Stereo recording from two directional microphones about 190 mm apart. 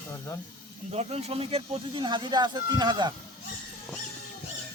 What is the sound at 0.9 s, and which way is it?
Speech, 35° right (ahead or behind).